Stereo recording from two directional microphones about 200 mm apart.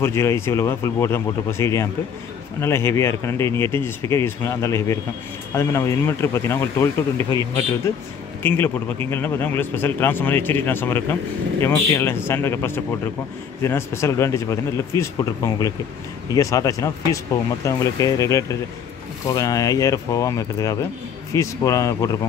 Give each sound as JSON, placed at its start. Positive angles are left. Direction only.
{"t": 0.0, "sound": "a man's voice", "side_deg": 15}